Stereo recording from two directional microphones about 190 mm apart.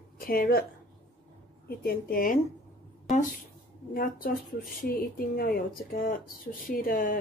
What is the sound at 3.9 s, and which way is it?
Speech, 50° left (ahead or behind).